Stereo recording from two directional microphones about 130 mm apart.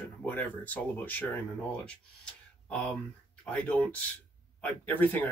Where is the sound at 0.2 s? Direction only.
15° left (ahead or behind).